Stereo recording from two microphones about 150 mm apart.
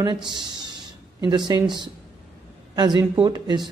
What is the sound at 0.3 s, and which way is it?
Speech, 30° right (ahead or behind).